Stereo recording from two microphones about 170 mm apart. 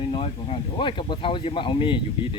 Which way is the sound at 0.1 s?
35° left (ahead or behind).